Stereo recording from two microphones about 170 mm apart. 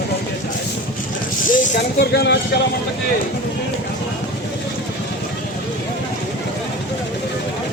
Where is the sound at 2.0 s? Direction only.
75° left (ahead or behind).